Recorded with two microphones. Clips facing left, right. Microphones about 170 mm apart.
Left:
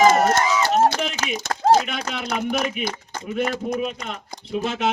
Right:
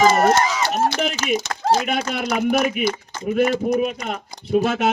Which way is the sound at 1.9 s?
50° right (ahead or behind).